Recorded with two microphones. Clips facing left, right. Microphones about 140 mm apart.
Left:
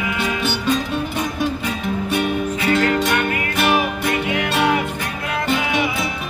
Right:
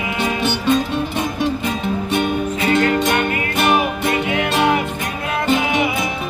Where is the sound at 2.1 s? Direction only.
25° right (ahead or behind).